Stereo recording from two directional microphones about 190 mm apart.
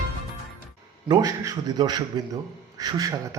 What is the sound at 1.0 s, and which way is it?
A man's voice, 20° right (ahead or behind).